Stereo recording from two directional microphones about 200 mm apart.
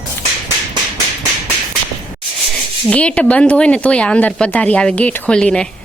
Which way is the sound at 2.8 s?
5° left (ahead or behind).